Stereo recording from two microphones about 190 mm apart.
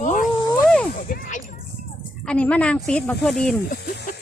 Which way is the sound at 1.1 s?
40° left (ahead or behind).